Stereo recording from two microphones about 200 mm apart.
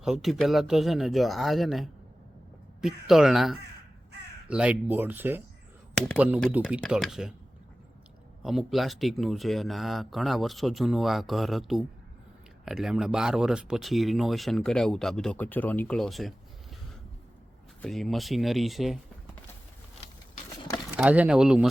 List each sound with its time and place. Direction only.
0.0 s speech: centre (ahead or behind)
8.4 s speech: centre (ahead or behind)
17.8 s speech: centre (ahead or behind)
20.0 s a sound: 30° left (ahead or behind)
20.9 s speech: 5° right (ahead or behind)